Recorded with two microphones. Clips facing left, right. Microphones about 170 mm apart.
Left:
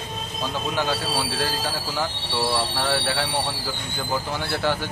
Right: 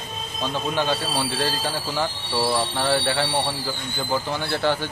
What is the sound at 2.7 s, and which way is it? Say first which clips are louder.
Speech: right 2 dB; 5° left (ahead or behind).